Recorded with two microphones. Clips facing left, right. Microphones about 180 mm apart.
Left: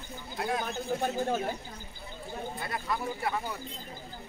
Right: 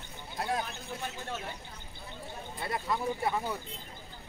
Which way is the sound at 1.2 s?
35° left (ahead or behind).